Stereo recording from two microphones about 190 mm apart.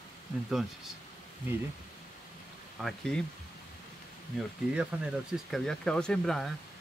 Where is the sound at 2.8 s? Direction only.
5° left (ahead or behind).